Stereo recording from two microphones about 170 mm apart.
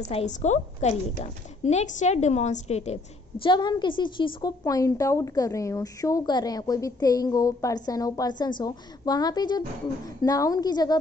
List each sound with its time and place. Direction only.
0.1 s a woman's voice: 40° left (ahead or behind); by 11.0 s 25° left (ahead or behind)